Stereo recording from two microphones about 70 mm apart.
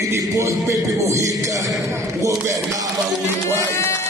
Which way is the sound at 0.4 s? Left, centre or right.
Right.